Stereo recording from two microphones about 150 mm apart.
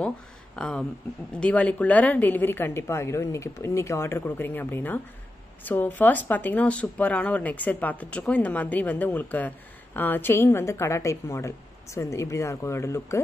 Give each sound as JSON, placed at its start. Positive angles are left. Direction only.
{"t": 0.6, "sound": "a woman's voice", "side_deg": 5}